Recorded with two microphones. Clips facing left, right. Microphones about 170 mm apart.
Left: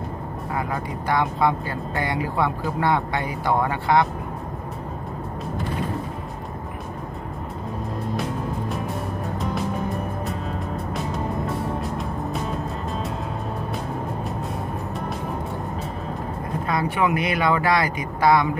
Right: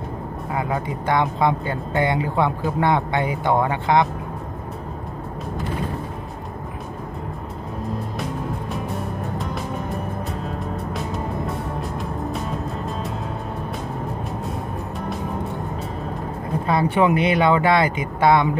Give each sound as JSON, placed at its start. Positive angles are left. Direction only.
{"t": 0.6, "sound": "speech", "side_deg": -20}
{"t": 16.6, "sound": "speech", "side_deg": -30}